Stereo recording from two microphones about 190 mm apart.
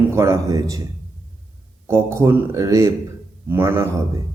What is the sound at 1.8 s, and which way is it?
A man's voice, 15° right (ahead or behind).